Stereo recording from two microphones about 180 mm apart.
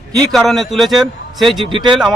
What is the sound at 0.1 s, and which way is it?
Speech, centre (ahead or behind).